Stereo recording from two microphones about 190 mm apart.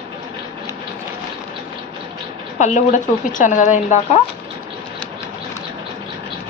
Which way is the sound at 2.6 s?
40° left (ahead or behind).